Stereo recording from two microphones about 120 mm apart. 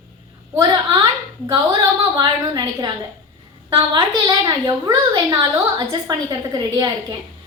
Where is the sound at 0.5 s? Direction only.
35° right (ahead or behind).